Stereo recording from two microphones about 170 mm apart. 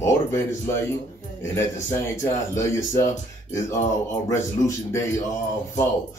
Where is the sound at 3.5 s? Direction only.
20° left (ahead or behind).